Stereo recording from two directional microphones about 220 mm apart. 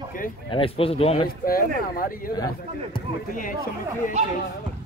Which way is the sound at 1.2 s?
40° left (ahead or behind).